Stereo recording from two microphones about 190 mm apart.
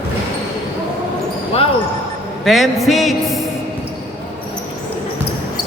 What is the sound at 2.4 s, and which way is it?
Music, centre (ahead or behind).